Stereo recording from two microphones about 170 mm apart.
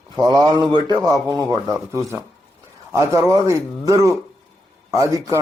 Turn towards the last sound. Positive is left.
turn(degrees=-20)  # may be behind; listen again after turning